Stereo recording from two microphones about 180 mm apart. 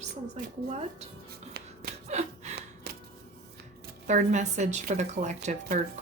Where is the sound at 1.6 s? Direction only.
60° right (ahead or behind).